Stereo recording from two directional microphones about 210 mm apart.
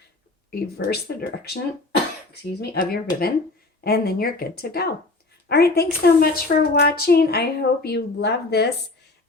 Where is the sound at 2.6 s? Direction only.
45° left (ahead or behind).